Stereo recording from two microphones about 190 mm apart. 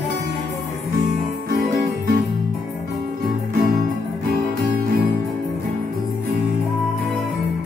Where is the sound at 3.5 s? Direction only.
50° right (ahead or behind).